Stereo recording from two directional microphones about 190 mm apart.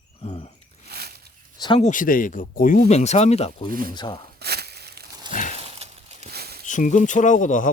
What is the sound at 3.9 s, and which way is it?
Speech, 25° left (ahead or behind).